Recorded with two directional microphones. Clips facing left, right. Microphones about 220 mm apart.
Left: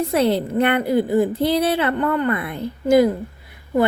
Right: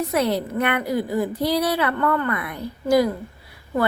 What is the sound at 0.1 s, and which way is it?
A woman's voice, 30° left (ahead or behind).